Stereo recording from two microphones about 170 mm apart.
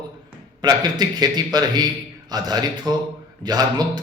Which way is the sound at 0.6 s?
25° right (ahead or behind).